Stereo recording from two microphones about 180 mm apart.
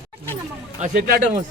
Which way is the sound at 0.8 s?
50° right (ahead or behind).